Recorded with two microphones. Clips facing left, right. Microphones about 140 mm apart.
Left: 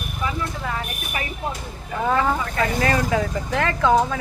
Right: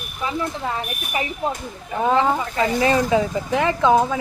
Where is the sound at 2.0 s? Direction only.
20° right (ahead or behind).